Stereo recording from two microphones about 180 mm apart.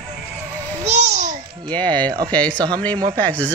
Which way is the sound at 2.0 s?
25° right (ahead or behind).